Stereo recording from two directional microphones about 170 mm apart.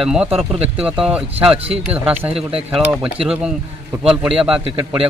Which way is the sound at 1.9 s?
10° right (ahead or behind).